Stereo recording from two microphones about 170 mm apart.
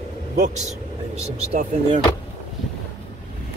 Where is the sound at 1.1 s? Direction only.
40° right (ahead or behind).